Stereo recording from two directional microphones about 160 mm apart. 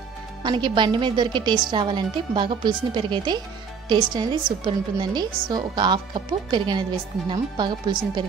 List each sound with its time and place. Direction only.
0.4 s a woman's voice: 30° right (ahead or behind)